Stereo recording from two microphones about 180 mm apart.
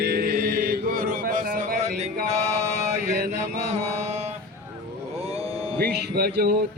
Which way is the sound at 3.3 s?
35° right (ahead or behind).